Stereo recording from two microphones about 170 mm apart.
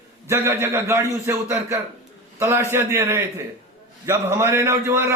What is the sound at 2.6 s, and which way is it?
A man's voice, 15° right (ahead or behind).